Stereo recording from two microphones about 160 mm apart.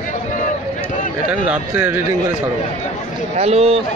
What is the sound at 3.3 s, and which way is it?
Speech, 40° right (ahead or behind).